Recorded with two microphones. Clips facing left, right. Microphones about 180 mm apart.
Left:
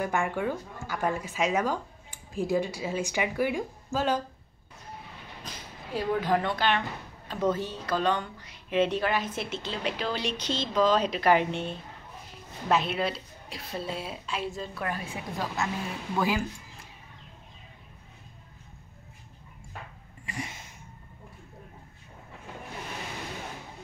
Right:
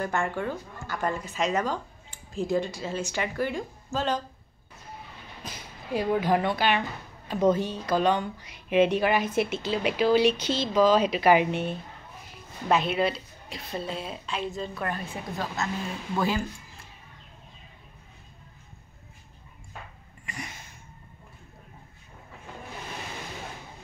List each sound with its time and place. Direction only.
0.0 s speech: 10° left (ahead or behind)
5.4 s speech: 10° right (ahead or behind); by 16.4 s 10° left (ahead or behind)
20.2 s a sound: 30° left (ahead or behind)